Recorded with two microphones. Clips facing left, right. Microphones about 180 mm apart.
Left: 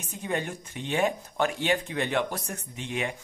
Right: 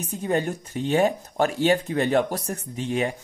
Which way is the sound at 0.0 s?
40° right (ahead or behind).